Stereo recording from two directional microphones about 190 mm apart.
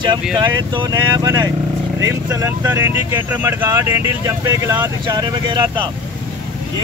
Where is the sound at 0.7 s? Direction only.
20° right (ahead or behind).